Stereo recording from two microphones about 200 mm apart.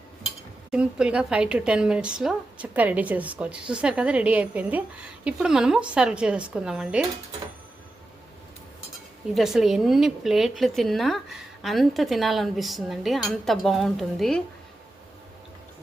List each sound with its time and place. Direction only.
0.7 s a woman's voice: 5° right (ahead or behind)
9.3 s a woman's voice: centre (ahead or behind)